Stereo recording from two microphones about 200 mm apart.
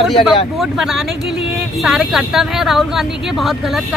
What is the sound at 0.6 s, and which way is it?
Speech, centre (ahead or behind).